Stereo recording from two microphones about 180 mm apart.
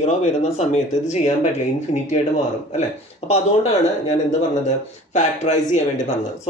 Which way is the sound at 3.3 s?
40° left (ahead or behind).